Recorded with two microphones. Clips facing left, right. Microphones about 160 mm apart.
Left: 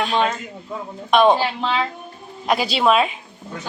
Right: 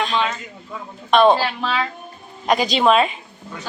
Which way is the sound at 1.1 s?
10° left (ahead or behind).